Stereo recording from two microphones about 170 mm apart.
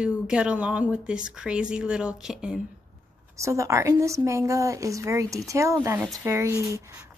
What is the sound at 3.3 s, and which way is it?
Speech, 15° right (ahead or behind).